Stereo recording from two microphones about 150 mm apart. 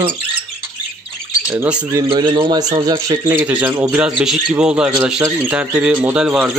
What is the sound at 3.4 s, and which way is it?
Speech, 10° right (ahead or behind).